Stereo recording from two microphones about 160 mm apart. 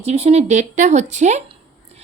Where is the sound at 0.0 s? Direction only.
40° right (ahead or behind).